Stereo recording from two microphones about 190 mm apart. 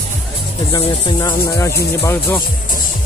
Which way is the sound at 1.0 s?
20° left (ahead or behind).